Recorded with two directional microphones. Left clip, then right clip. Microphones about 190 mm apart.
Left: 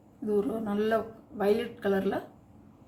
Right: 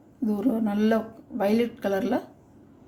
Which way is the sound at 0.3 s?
45° right (ahead or behind).